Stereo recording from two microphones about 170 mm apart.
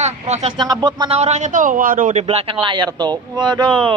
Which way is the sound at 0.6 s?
25° right (ahead or behind).